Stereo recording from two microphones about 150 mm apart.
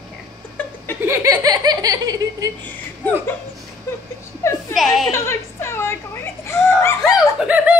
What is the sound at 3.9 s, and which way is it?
Whimper, 15° left (ahead or behind).